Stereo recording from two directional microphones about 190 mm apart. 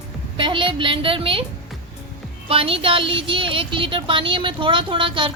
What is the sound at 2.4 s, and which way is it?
Speech, 30° right (ahead or behind).